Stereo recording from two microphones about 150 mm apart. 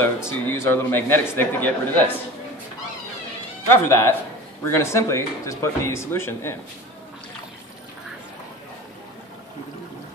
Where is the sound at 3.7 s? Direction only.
15° left (ahead or behind).